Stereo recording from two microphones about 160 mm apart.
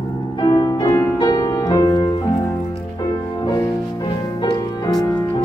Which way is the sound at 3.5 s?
25° left (ahead or behind).